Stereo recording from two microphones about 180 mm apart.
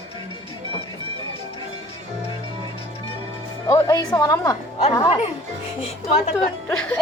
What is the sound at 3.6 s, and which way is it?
Speech, 20° left (ahead or behind).